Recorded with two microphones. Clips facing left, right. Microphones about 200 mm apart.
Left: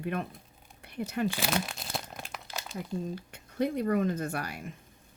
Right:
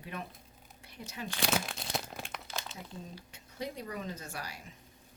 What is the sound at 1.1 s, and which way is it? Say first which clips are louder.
Speech: left 12 dB; 55° left (ahead or behind).